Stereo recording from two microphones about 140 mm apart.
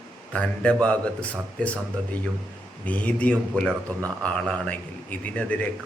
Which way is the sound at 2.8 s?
10° left (ahead or behind).